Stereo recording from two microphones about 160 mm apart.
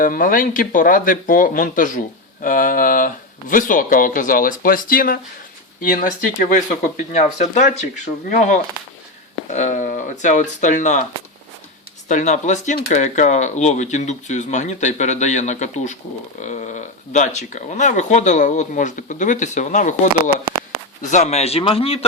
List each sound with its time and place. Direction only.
0.0 s speech: 60° left (ahead or behind)
12.0 s speech: 50° left (ahead or behind)
21.0 s a man's voice: 50° left (ahead or behind)